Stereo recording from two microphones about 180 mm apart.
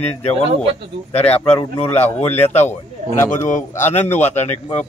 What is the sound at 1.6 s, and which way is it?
Speech, 15° left (ahead or behind).